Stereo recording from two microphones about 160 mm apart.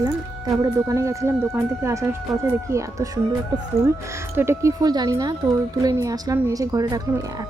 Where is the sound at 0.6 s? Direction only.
20° right (ahead or behind).